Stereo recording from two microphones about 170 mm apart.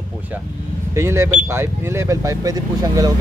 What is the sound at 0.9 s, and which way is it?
Speech, 15° right (ahead or behind).